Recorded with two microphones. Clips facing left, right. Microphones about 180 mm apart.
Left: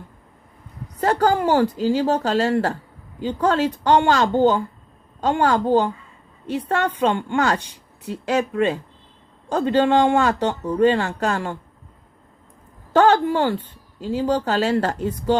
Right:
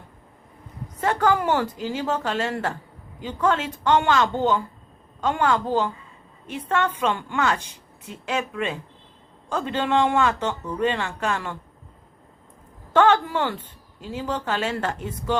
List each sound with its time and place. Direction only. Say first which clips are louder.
1.0 s a woman's voice: left 3 dB; 35° left (ahead or behind)
12.9 s a woman's voice: left 3 dB; 35° left (ahead or behind)